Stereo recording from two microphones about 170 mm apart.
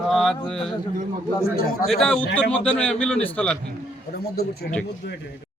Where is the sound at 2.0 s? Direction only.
5° left (ahead or behind).